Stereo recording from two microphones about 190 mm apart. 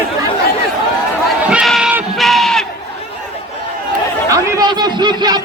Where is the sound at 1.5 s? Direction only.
5° right (ahead or behind).